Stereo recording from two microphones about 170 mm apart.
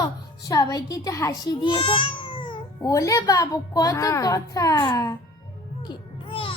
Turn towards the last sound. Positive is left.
turn(degrees=30)  # may be behind; listen again after turning